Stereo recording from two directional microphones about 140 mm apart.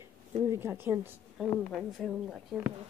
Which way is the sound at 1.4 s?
Centre (ahead or behind).